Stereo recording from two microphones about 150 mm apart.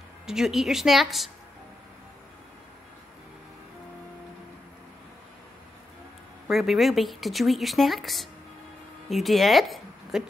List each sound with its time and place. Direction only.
0.3 s speech: centre (ahead or behind)
6.4 s speech: centre (ahead or behind)